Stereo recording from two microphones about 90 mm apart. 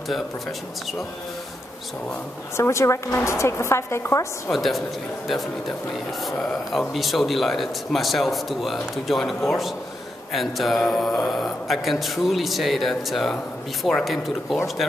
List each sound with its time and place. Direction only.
2.5 s a woman's voice: 30° left (ahead or behind)
4.5 s speech: centre (ahead or behind)
6.2 s speech: centre (ahead or behind)